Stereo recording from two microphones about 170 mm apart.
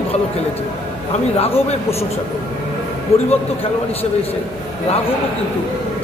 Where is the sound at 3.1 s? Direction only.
35° left (ahead or behind).